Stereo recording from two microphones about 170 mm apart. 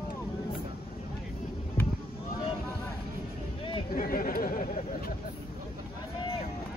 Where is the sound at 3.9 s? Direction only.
55° left (ahead or behind).